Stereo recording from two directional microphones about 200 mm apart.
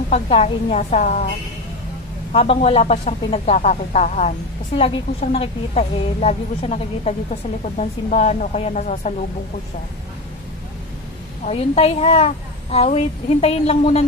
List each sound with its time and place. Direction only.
0.1 s a woman's voice: 30° left (ahead or behind)
2.3 s a woman's voice: 30° left (ahead or behind)
11.4 s a woman's voice: 30° left (ahead or behind)